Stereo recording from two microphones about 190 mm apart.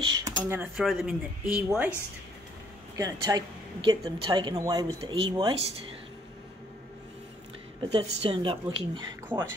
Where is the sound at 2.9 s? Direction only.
20° right (ahead or behind).